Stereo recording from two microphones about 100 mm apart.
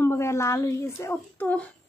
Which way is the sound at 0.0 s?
25° left (ahead or behind).